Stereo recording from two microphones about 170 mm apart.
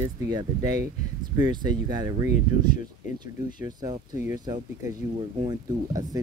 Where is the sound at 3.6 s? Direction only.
20° right (ahead or behind).